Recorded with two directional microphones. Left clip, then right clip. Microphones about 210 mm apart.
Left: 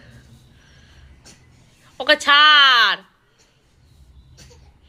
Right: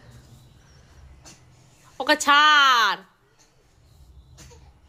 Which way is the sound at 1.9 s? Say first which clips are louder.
Left 4 dB; 15° right (ahead or behind).